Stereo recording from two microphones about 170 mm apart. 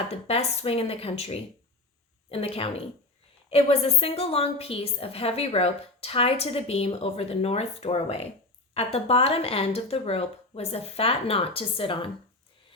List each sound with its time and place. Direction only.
0.1 s a woman's voice: 35° left (ahead or behind)